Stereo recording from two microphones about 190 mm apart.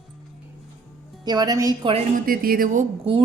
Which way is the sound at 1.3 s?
20° right (ahead or behind).